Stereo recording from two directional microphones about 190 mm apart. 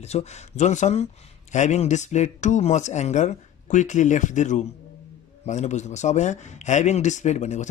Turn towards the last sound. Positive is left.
turn(degrees=35)  # may be behind; listen again after turning